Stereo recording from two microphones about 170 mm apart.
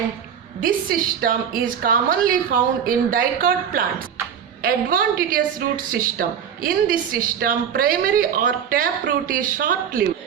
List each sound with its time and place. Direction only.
0.6 s a woman's voice: 55° right (ahead or behind)